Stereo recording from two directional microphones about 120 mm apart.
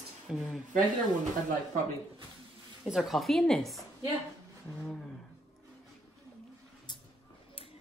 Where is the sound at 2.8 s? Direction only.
Centre (ahead or behind).